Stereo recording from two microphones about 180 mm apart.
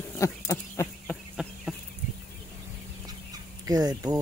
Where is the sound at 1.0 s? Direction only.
Centre (ahead or behind).